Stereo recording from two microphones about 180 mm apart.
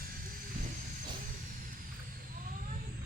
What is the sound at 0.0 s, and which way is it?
Vehicle, 55° right (ahead or behind).